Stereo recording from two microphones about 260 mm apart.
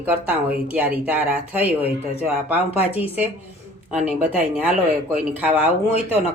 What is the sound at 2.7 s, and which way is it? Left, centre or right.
Speech, left.